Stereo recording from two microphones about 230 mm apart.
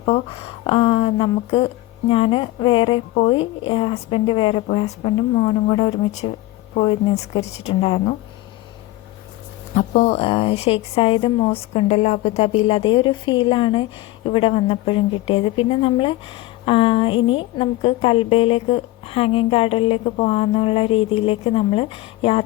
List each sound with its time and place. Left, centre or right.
0.0 s a woman's voice: left
9.7 s a woman's voice: left